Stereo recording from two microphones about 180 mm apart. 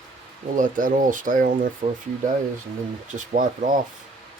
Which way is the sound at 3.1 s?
45° right (ahead or behind).